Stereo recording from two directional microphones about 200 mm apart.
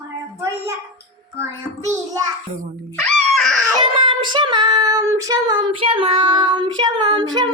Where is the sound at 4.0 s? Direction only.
25° right (ahead or behind).